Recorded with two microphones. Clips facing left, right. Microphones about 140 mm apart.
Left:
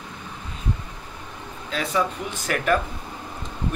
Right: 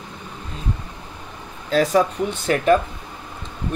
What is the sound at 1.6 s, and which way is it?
Speech, 40° right (ahead or behind).